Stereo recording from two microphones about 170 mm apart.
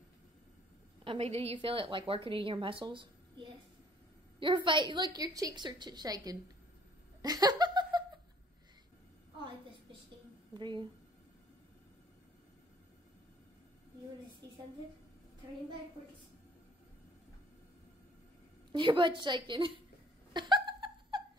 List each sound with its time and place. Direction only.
1.0 s a woman's voice: 35° right (ahead or behind)
4.4 s a woman's voice: 30° right (ahead or behind)
7.2 s laughter: 20° right (ahead or behind)
10.5 s a woman's voice: 25° right (ahead or behind)
14.4 s a sound: 20° right (ahead or behind)
18.7 s a woman's voice: 30° right (ahead or behind)
20.3 s laughter: 25° right (ahead or behind)